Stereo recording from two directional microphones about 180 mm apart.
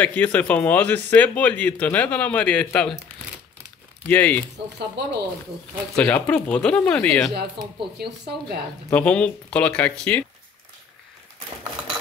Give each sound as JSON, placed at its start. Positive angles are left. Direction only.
{"t": 0.0, "sound": "speech", "side_deg": 10}
{"t": 4.1, "sound": "speech", "side_deg": 10}
{"t": 5.0, "sound": "speech", "side_deg": -65}
{"t": 5.9, "sound": "speech", "side_deg": 10}
{"t": 8.0, "sound": "a woman's voice", "side_deg": -65}
{"t": 8.9, "sound": "speech", "side_deg": 5}